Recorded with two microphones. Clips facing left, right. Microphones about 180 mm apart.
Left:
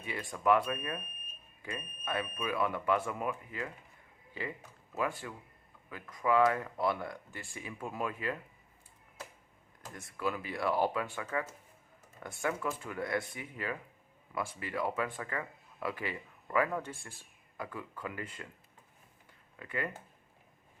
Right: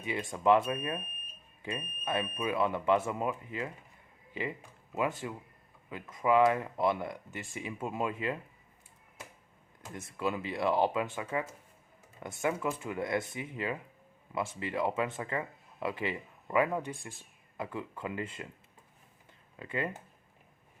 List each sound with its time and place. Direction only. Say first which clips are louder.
0.0 s speech: right 3 dB; 20° right (ahead or behind)
4.9 s speech: right 3 dB; 20° right (ahead or behind)
10.1 s speech: right 2 dB; 25° right (ahead or behind)
19.5 s speech: right 3 dB; 25° right (ahead or behind)